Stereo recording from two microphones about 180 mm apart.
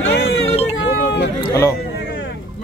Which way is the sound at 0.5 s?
35° left (ahead or behind).